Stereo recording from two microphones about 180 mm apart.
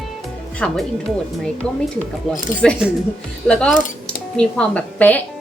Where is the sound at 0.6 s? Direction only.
5° left (ahead or behind).